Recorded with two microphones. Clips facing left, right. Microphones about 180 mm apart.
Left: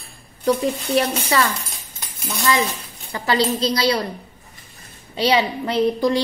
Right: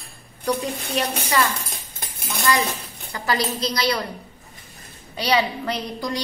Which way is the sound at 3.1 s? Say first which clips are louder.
Left 4 dB; 25° left (ahead or behind).